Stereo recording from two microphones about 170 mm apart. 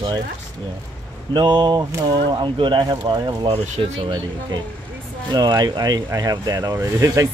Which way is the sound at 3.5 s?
40° right (ahead or behind).